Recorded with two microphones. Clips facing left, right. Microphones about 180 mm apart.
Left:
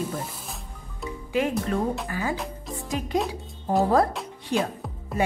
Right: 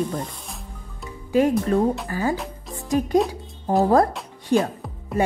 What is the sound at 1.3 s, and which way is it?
Speech, 40° right (ahead or behind).